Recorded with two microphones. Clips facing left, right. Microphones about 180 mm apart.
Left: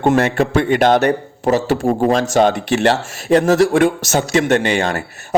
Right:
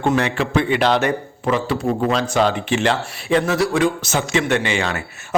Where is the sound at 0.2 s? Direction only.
45° left (ahead or behind).